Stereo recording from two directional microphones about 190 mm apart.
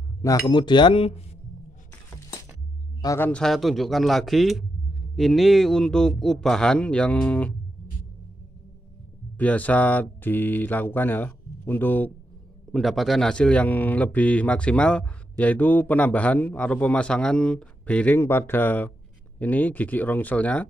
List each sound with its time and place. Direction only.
0.2 s speech: 20° left (ahead or behind)
3.0 s speech: 15° left (ahead or behind)
9.4 s speech: 10° left (ahead or behind)